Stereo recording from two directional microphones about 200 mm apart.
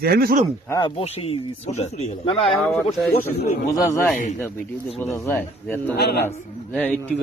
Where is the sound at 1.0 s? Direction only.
30° left (ahead or behind).